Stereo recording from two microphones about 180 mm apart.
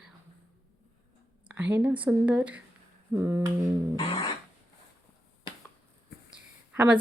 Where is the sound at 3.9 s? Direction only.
30° left (ahead or behind).